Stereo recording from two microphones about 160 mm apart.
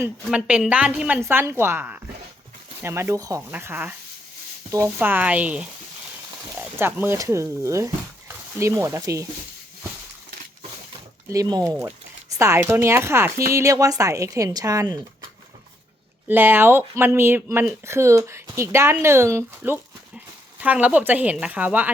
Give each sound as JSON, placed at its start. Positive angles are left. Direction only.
{"t": 0.3, "sound": "speech", "side_deg": -5}
{"t": 6.7, "sound": "speech", "side_deg": -15}
{"t": 11.3, "sound": "speech", "side_deg": -25}
{"t": 16.3, "sound": "speech", "side_deg": -10}